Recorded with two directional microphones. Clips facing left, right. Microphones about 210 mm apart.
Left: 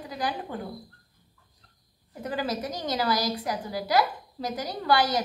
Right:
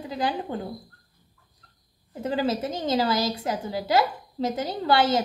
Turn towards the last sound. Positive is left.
turn(degrees=-25)  # may be behind; listen again after turning